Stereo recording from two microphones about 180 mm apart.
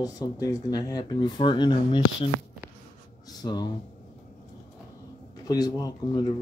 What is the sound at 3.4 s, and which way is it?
Speech, 20° left (ahead or behind).